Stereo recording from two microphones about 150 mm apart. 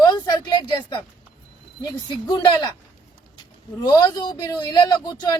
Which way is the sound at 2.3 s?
30° left (ahead or behind).